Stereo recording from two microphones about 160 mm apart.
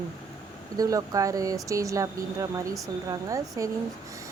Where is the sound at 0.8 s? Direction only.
20° right (ahead or behind).